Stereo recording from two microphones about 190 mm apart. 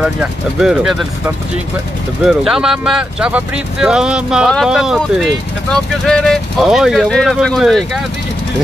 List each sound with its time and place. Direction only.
0.0 s speech: 5° right (ahead or behind)